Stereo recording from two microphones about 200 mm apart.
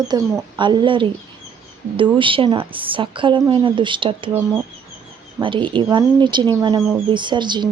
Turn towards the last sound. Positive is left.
turn(degrees=-20)  # may be behind; listen again after turning